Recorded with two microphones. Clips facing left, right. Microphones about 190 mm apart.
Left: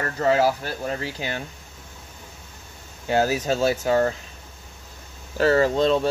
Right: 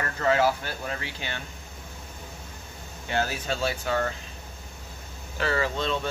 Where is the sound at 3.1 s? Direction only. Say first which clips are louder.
Left 7 dB; 40° left (ahead or behind).